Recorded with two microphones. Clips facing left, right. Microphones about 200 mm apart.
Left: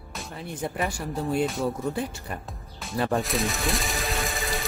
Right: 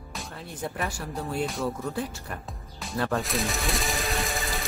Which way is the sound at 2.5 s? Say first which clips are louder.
Even; centre (ahead or behind).